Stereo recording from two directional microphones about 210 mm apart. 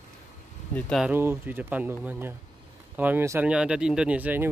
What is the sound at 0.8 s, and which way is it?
Speech, centre (ahead or behind).